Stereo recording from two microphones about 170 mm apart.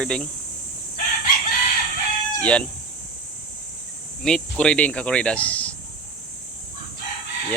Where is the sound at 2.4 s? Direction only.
5° left (ahead or behind).